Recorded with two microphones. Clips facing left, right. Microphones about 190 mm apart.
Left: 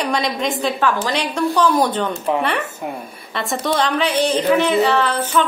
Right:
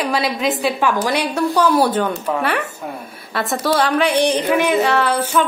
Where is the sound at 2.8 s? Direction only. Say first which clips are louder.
Left 2 dB; 20° left (ahead or behind).